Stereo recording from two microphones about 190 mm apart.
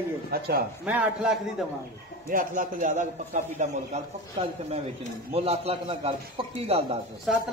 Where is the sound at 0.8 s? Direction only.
5° right (ahead or behind).